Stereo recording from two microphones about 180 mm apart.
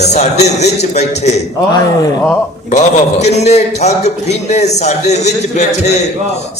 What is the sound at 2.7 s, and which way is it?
A man's voice, 40° left (ahead or behind).